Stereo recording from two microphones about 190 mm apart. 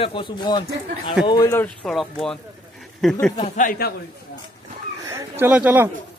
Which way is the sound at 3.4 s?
45° left (ahead or behind).